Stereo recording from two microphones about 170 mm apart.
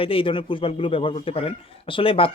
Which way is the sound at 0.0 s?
30° left (ahead or behind).